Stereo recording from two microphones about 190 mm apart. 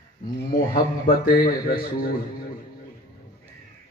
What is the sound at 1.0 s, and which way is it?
A man's voice, 50° left (ahead or behind).